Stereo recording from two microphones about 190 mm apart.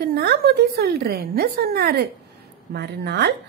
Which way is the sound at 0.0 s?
55° right (ahead or behind).